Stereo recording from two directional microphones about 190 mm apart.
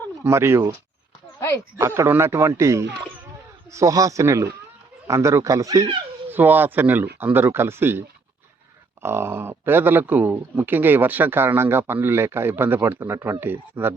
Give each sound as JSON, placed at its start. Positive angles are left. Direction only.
{"t": 0.3, "sound": "speech", "side_deg": -15}
{"t": 1.8, "sound": "speech", "side_deg": -15}